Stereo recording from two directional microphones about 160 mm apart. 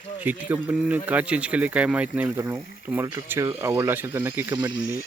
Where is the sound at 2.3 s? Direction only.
20° right (ahead or behind).